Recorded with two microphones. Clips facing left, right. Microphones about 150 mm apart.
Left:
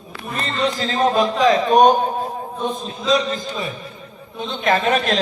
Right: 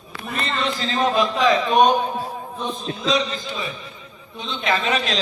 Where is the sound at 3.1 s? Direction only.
45° left (ahead or behind).